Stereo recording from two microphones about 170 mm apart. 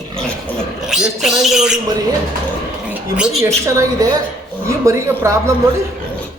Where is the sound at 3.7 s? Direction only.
20° right (ahead or behind).